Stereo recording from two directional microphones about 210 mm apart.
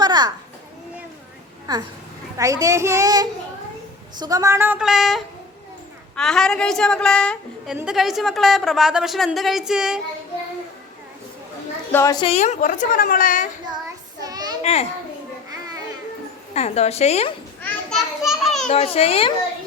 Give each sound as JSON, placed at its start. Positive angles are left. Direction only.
{"t": 0.0, "sound": "children playing", "side_deg": -20}
{"t": 2.4, "sound": "speech", "side_deg": -15}
{"t": 11.9, "sound": "speech", "side_deg": 10}
{"t": 12.2, "sound": "a woman's voice", "side_deg": 30}
{"t": 14.2, "sound": "a sound", "side_deg": -20}
{"t": 14.6, "sound": "a child's voice", "side_deg": 30}
{"t": 16.6, "sound": "a woman's voice", "side_deg": 30}
{"t": 17.6, "sound": "children playing", "side_deg": 5}
{"t": 18.7, "sound": "a child's voice", "side_deg": 30}